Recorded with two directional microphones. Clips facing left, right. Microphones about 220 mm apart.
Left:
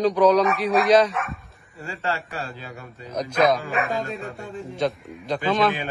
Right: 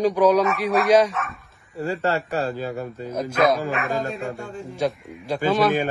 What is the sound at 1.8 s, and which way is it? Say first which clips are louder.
A man's voice: right 6 dB; 45° right (ahead or behind).